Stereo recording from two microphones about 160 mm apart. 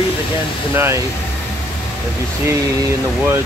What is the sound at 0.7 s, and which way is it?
Speech, 15° right (ahead or behind).